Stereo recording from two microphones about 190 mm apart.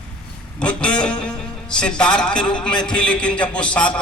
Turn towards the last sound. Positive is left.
turn(degrees=5)  # may be behind; listen again after turning